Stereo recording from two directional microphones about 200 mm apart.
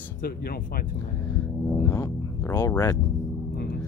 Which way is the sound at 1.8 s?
15° left (ahead or behind).